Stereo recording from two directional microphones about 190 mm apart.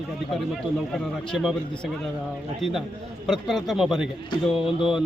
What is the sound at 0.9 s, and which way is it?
Speech, centre (ahead or behind).